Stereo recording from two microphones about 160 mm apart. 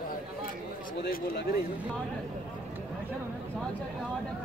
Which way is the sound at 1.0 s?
90° left.